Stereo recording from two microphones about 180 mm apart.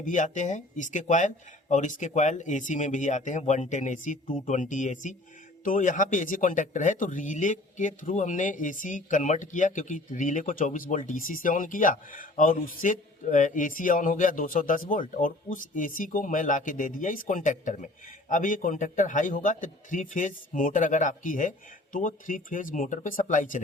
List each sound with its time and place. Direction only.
0.0 s speech: 45° left (ahead or behind)